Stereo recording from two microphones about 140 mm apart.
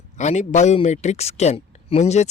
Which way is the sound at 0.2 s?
55° left (ahead or behind).